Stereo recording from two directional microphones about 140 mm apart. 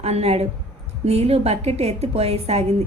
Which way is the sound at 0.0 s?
50° right (ahead or behind).